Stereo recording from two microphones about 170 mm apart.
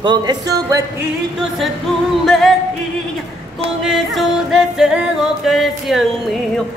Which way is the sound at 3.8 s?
Centre (ahead or behind).